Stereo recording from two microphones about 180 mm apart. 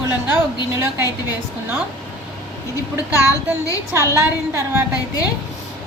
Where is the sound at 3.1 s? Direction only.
20° left (ahead or behind).